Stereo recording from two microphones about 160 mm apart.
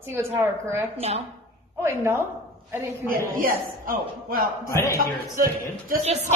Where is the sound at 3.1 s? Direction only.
65° right (ahead or behind).